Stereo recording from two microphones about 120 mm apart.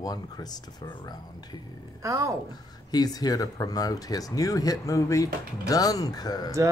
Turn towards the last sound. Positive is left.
turn(degrees=35)  # may be behind; listen again after turning